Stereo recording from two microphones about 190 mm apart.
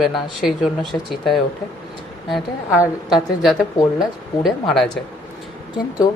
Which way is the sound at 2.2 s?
Centre (ahead or behind).